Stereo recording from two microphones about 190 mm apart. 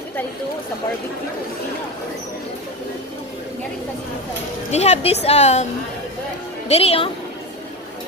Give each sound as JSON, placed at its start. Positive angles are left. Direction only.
{"t": 4.6, "sound": "a woman's voice", "side_deg": 35}
{"t": 6.7, "sound": "a woman's voice", "side_deg": 30}